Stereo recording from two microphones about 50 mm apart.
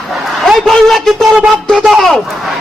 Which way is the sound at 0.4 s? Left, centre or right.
Centre.